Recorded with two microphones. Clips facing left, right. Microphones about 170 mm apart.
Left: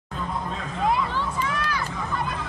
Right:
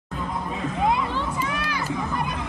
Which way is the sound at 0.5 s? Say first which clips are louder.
Right 2 dB; 15° right (ahead or behind).